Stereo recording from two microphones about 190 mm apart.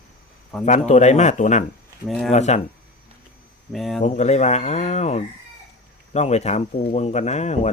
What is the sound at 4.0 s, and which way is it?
Speech, 35° left (ahead or behind).